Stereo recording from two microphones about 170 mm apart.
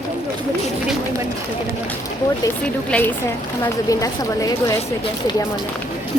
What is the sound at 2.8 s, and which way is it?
Speech, 10° left (ahead or behind).